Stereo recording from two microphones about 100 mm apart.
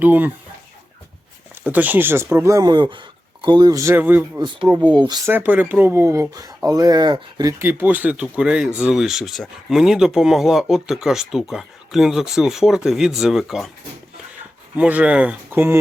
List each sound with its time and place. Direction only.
0.0 s speech: 15° right (ahead or behind)
1.6 s speech: 15° right (ahead or behind); by 3.8 s 45° right (ahead or behind)
3.8 s speech: 25° right (ahead or behind)
4.9 s speech: 45° right (ahead or behind)
5.2 s speech: 20° right (ahead or behind); by 7.5 s 40° right (ahead or behind)
7.6 s speech: 20° right (ahead or behind); by 13.7 s 5° right (ahead or behind)
14.8 s speech: 15° right (ahead or behind)
15.5 s speech: 25° right (ahead or behind)